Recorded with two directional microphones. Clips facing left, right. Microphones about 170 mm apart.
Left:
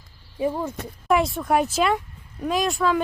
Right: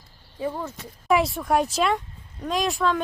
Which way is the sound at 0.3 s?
15° left (ahead or behind).